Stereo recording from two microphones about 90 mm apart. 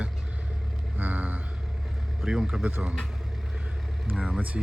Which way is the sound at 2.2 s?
5° right (ahead or behind).